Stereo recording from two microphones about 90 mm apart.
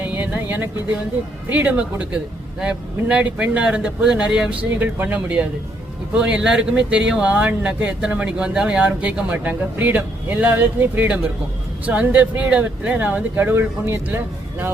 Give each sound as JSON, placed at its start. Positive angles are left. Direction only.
{"t": 0.0, "sound": "vehicle", "side_deg": -20}
{"t": 1.5, "sound": "speech", "side_deg": -15}